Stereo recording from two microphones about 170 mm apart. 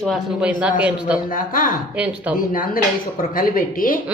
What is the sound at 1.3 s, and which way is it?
Speech, 55° left (ahead or behind).